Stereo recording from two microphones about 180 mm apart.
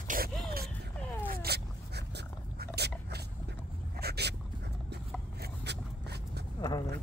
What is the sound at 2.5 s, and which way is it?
Dog, 65° right (ahead or behind).